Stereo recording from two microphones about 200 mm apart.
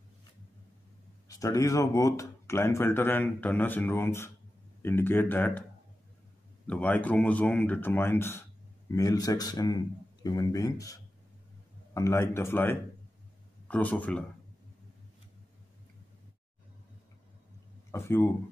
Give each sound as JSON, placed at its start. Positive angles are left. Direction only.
{"t": 1.3, "sound": "speech", "side_deg": 15}
{"t": 6.7, "sound": "speech", "side_deg": 5}
{"t": 17.9, "sound": "speech", "side_deg": 10}